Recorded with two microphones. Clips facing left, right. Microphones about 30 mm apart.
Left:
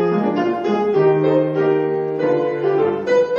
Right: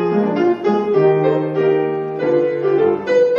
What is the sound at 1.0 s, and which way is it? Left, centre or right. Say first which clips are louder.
Music: even; centre.